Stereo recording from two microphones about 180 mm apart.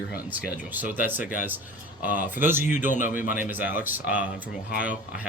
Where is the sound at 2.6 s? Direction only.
45° left (ahead or behind).